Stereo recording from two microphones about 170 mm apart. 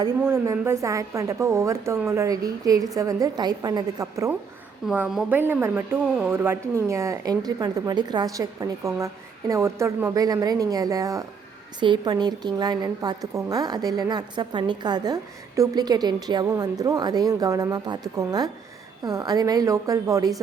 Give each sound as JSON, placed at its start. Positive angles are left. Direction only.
{"t": 0.3, "sound": "a woman's voice", "side_deg": -15}
{"t": 4.9, "sound": "a woman's voice", "side_deg": -5}